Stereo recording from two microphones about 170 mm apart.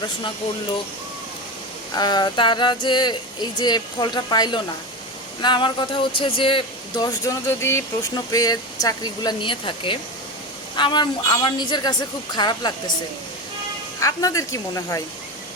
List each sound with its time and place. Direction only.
2.0 s speech: 25° left (ahead or behind)
14.0 s speech: 20° left (ahead or behind)